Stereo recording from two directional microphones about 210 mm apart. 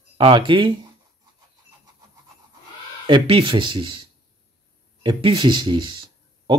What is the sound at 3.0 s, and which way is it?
Speech, 25° right (ahead or behind).